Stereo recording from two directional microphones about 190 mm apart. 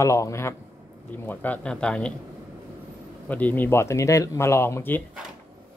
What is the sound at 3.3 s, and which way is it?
Speech, 10° left (ahead or behind).